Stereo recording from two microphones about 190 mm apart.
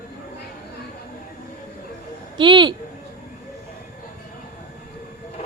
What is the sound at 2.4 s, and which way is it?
Speech, 25° right (ahead or behind).